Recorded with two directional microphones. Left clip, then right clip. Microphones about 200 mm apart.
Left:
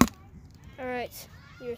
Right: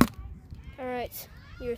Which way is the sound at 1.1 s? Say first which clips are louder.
Even; 30° right (ahead or behind).